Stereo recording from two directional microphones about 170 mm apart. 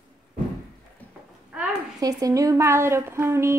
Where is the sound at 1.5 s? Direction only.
5° right (ahead or behind).